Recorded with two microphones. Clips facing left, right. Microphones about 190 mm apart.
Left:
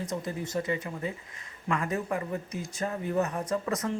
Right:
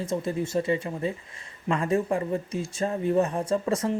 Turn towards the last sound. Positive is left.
turn(degrees=-25)  # may be behind; listen again after turning